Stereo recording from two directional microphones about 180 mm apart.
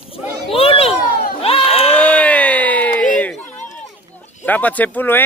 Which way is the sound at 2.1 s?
10° left (ahead or behind).